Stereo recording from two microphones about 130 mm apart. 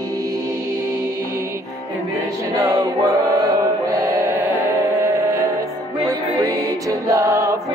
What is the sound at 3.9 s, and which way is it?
Music, 25° right (ahead or behind).